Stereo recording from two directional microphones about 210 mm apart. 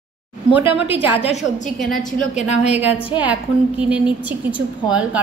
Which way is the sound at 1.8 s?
Centre (ahead or behind).